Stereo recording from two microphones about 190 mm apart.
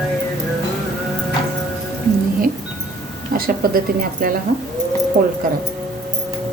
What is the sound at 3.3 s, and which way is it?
Speech, 50° right (ahead or behind).